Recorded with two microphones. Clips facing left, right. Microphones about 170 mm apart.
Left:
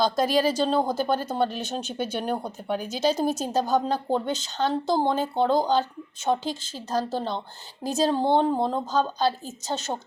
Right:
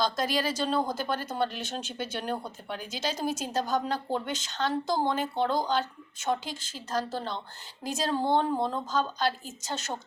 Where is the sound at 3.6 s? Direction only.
30° left (ahead or behind).